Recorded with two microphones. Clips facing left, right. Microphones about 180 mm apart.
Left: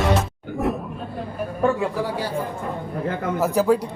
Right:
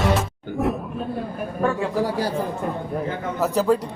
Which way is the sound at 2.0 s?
40° right (ahead or behind).